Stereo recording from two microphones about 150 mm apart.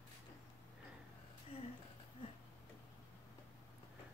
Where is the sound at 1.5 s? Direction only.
40° left (ahead or behind).